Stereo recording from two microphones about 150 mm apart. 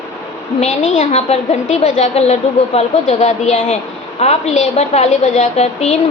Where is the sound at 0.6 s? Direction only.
55° left (ahead or behind).